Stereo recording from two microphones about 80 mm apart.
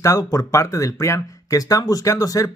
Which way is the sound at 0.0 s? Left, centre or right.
Left.